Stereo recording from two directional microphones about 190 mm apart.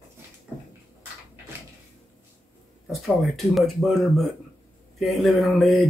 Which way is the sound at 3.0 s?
Centre (ahead or behind).